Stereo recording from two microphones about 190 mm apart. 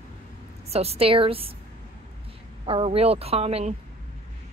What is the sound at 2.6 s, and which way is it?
A woman's voice, 30° right (ahead or behind).